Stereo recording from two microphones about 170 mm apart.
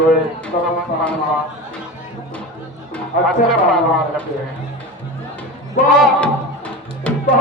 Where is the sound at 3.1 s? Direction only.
55° left (ahead or behind).